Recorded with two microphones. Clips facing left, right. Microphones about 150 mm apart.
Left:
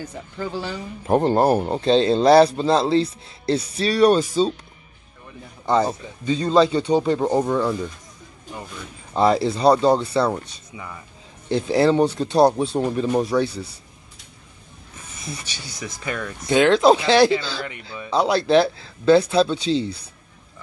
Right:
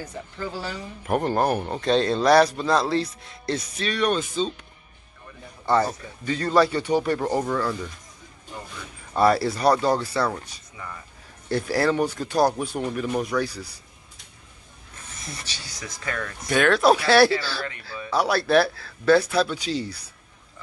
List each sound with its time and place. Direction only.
0.6 s speech: 25° left (ahead or behind)
5.7 s speech: 20° left (ahead or behind)
9.1 s speech: 20° left (ahead or behind)
15.8 s speech: 15° left (ahead or behind)